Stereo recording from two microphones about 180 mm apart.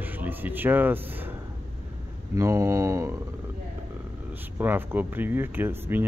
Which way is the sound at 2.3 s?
15° right (ahead or behind).